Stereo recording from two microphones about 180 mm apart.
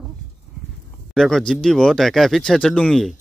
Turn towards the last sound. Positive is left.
turn(degrees=5)  # may be behind; listen again after turning